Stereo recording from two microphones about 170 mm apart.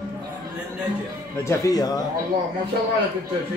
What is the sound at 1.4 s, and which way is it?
Speech, 20° left (ahead or behind).